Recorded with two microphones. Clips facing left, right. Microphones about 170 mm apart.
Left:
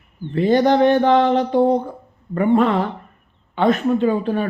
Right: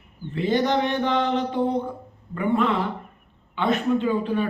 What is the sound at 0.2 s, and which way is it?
A man's voice, 50° left (ahead or behind).